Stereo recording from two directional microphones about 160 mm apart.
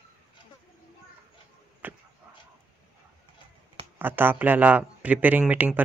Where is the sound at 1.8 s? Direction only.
10° right (ahead or behind).